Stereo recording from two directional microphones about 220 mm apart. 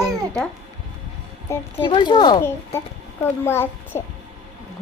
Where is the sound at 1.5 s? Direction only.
20° left (ahead or behind).